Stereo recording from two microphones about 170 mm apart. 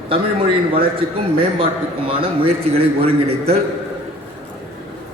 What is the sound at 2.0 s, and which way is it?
A man's voice, 35° right (ahead or behind).